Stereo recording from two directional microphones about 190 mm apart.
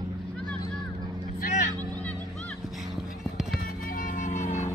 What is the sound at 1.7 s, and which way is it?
Vehicle, 20° right (ahead or behind).